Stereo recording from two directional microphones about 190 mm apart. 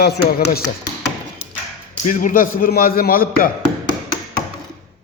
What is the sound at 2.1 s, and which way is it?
A man's voice, 45° left (ahead or behind).